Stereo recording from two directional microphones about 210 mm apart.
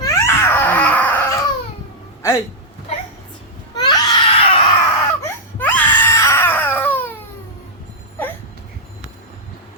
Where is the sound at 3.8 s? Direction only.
20° left (ahead or behind).